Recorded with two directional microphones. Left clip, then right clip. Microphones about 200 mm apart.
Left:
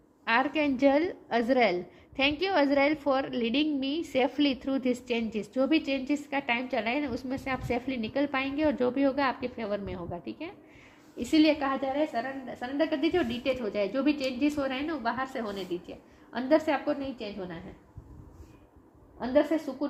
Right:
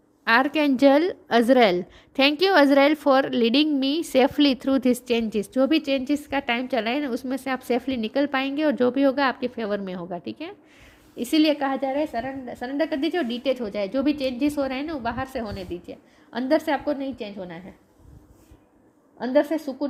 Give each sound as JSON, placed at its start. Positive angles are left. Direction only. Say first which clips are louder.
{"t": 0.3, "sound": "a woman's voice", "louder": "right 7 dB", "side_deg": -50}
{"t": 19.2, "sound": "a woman's voice", "louder": "right 4 dB", "side_deg": -55}